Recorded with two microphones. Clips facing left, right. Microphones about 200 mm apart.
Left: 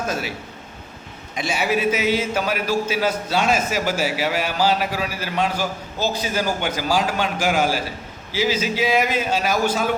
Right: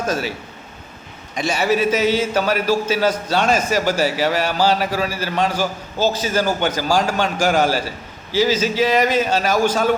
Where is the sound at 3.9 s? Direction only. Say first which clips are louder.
Right 4 dB; 40° right (ahead or behind).